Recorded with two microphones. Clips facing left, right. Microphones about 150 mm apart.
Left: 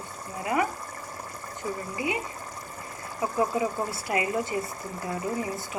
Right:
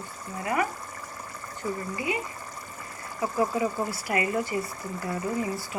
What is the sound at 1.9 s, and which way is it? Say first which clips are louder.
Speech: left 2 dB; 20° left (ahead or behind).